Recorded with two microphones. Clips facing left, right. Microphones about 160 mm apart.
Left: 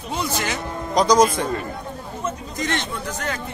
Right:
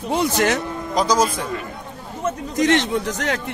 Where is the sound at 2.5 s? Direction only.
80° right.